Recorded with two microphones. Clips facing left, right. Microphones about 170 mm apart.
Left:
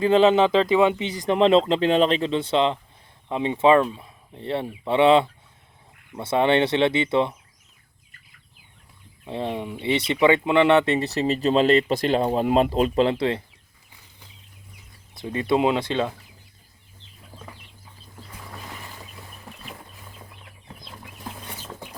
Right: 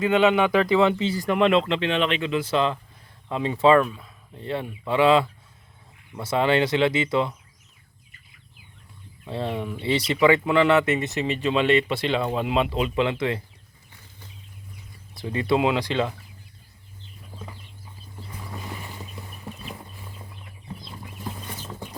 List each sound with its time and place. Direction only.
0.0 s speech: 30° left (ahead or behind)
9.2 s speech: 20° left (ahead or behind)
15.4 s speech: 25° left (ahead or behind)